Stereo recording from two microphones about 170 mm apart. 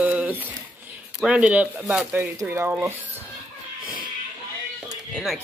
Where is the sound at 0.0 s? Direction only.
10° right (ahead or behind).